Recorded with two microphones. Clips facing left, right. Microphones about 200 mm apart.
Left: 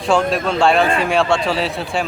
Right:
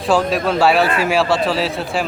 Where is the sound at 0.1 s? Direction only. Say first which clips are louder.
Even; centre (ahead or behind).